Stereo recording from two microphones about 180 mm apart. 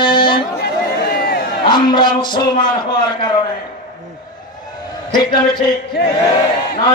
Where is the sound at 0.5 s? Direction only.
60° left (ahead or behind).